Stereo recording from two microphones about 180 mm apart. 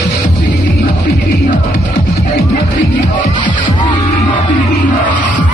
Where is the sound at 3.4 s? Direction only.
45° left (ahead or behind).